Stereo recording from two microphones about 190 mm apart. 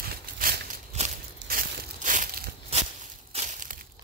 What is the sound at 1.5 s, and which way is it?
Crushing, 45° right (ahead or behind).